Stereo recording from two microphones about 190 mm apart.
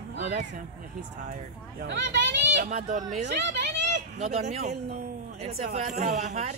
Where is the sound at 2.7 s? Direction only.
40° right (ahead or behind).